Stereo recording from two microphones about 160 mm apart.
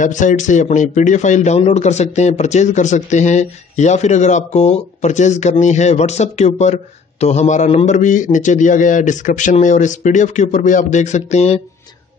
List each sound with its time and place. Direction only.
0.0 s a man's voice: 50° left (ahead or behind)